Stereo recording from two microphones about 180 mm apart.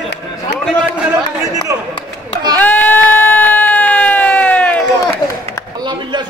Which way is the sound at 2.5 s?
10° left (ahead or behind).